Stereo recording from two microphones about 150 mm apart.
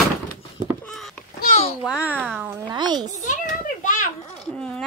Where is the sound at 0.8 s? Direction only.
Centre (ahead or behind).